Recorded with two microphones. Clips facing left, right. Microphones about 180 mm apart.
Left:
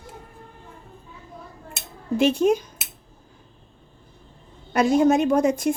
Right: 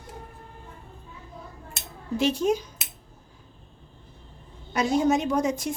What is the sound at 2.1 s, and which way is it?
Speech, 55° left (ahead or behind).